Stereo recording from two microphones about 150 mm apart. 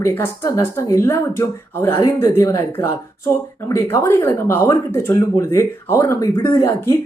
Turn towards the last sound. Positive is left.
turn(degrees=15)  # may be behind; listen again after turning